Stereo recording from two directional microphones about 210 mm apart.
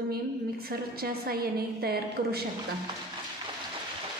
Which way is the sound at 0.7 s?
45° right (ahead or behind).